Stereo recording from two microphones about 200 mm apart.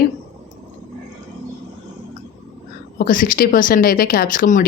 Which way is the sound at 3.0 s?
45° left (ahead or behind).